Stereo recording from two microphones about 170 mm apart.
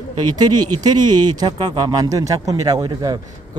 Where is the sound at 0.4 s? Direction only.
25° right (ahead or behind).